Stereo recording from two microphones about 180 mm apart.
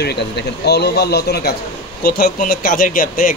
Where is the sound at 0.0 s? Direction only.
65° left (ahead or behind).